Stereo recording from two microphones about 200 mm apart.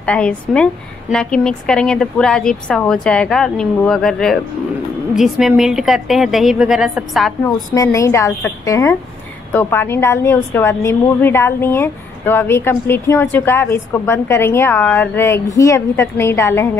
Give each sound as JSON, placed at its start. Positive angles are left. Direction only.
{"t": 0.0, "sound": "a woman's voice", "side_deg": 5}
{"t": 7.4, "sound": "a woman's voice", "side_deg": 15}